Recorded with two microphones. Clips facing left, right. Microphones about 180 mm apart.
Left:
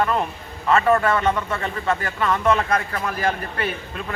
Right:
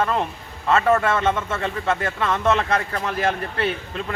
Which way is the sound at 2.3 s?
25° right (ahead or behind).